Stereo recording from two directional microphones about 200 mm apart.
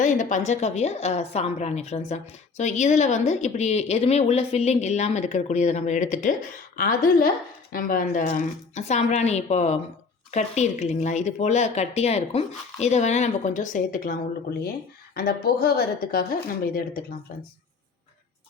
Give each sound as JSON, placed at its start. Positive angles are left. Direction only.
{"t": 0.0, "sound": "a woman's voice", "side_deg": 40}